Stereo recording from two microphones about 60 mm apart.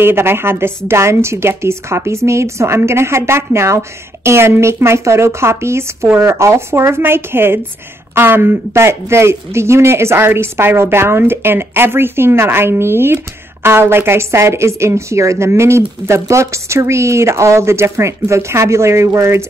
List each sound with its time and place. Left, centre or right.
0.0 s speech: right